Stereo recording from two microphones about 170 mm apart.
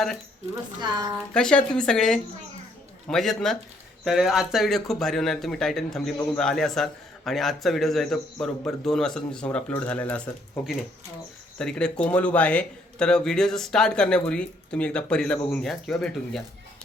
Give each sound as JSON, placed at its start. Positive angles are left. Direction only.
{"t": 0.5, "sound": "a woman's voice", "side_deg": -25}
{"t": 1.3, "sound": "a man's voice", "side_deg": 5}